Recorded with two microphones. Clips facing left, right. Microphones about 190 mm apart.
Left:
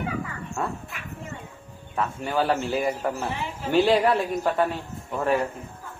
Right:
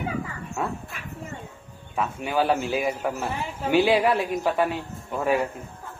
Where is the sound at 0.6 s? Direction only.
10° right (ahead or behind).